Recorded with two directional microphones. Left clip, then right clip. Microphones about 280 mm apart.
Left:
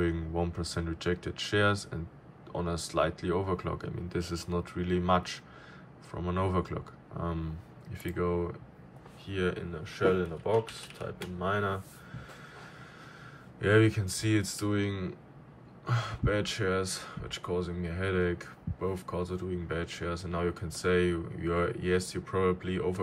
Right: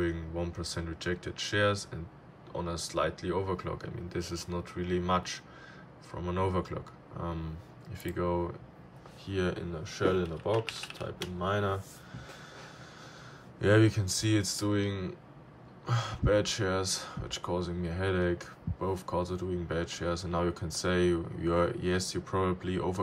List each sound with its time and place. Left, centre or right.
0.0 s speech: centre
11.4 s speech: centre
13.6 s speech: centre